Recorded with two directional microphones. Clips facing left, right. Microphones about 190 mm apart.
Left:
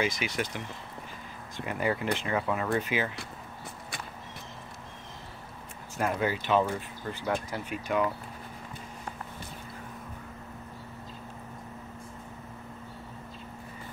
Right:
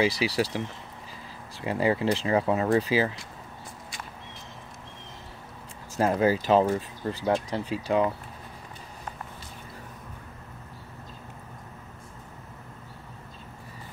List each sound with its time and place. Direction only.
0.0 s speech: 35° right (ahead or behind)
5.9 s speech: 30° right (ahead or behind)